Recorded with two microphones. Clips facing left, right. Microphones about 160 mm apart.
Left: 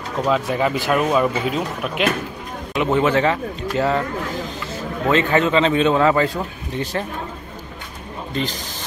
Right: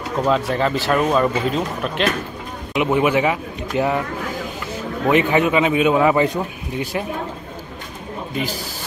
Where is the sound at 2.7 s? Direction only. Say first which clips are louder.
Even; 15° right (ahead or behind).